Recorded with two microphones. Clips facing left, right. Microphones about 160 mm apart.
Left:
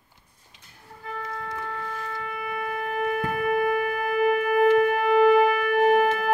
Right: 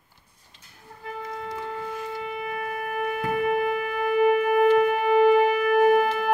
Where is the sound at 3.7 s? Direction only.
45° left (ahead or behind).